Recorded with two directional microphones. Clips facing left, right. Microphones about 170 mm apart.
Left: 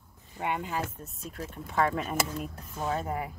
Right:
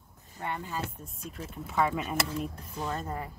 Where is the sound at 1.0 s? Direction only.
Centre (ahead or behind).